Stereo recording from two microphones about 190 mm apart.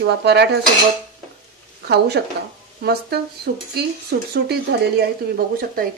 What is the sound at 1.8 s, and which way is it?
Speech, 60° right (ahead or behind).